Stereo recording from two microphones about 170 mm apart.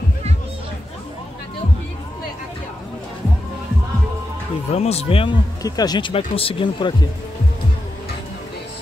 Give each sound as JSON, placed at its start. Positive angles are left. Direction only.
{"t": 4.6, "sound": "speech", "side_deg": 40}